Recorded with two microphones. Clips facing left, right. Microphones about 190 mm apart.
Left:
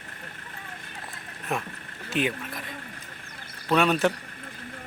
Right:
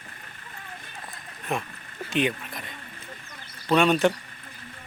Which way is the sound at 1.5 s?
Centre (ahead or behind).